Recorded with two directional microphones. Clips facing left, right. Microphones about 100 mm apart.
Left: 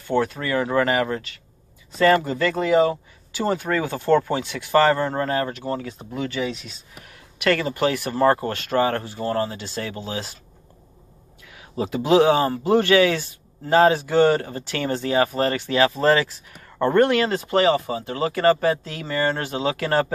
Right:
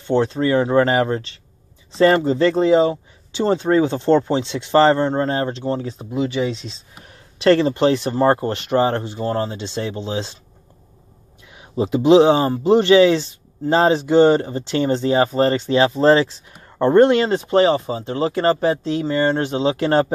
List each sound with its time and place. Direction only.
0.0 s speech: 25° right (ahead or behind)
11.5 s speech: 20° right (ahead or behind)